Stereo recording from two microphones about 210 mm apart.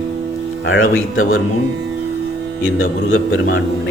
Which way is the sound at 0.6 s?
70° left (ahead or behind).